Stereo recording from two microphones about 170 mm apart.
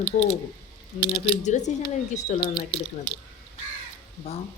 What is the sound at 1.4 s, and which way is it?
Speech, 45° left (ahead or behind).